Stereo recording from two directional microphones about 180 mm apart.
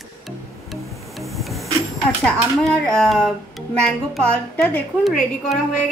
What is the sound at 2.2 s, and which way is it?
A woman's voice, centre (ahead or behind).